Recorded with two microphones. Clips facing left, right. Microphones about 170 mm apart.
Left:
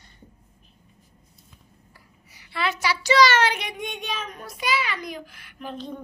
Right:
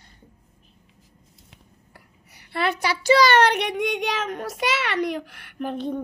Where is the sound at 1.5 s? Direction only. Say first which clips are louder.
Right 1 dB; 60° right (ahead or behind).